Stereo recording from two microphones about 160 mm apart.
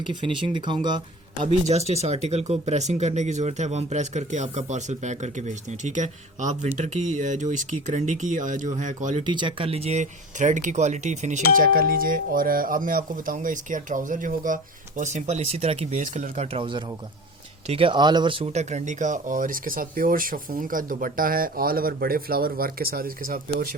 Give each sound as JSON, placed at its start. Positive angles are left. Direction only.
{"t": 0.0, "sound": "speech", "side_deg": -30}
{"t": 1.5, "sound": "speech", "side_deg": -40}
{"t": 9.2, "sound": "speech", "side_deg": -30}
{"t": 16.6, "sound": "speech", "side_deg": -30}